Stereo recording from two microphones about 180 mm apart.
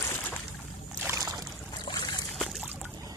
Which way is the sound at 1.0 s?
15° right (ahead or behind).